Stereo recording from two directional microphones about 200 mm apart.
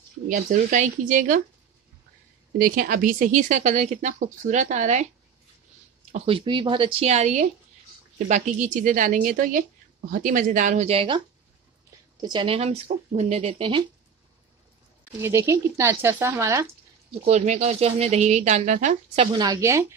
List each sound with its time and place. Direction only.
0.3 s speech: 40° right (ahead or behind)
2.6 s speech: 45° right (ahead or behind)
6.1 s speech: 25° right (ahead or behind)
15.1 s speech: 15° right (ahead or behind)
17.3 s speech: 35° right (ahead or behind)
19.3 s speech: 20° right (ahead or behind)